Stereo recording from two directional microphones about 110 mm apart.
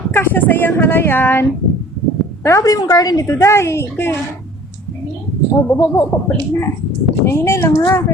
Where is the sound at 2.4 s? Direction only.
30° left (ahead or behind).